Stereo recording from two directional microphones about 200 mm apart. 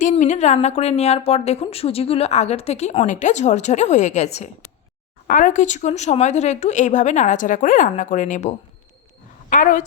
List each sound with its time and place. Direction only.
0.0 s a woman's voice: 35° left (ahead or behind)